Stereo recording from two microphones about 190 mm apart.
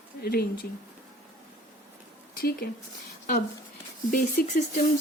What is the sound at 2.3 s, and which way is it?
Speech, 50° left (ahead or behind).